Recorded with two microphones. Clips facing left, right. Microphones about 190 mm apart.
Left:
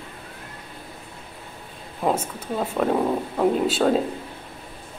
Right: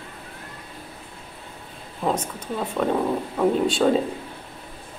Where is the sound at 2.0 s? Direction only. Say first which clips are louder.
Left 1 dB; 5° left (ahead or behind).